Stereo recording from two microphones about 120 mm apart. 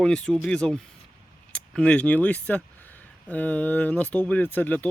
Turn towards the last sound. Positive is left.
turn(degrees=15)  # may be behind; listen again after turning